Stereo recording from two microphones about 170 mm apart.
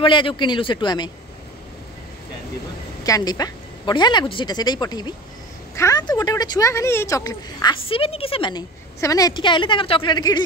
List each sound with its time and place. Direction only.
0.0 s a woman's voice: 30° left (ahead or behind)
3.0 s a woman's voice: 20° left (ahead or behind)
7.7 s a woman's voice: 35° left (ahead or behind)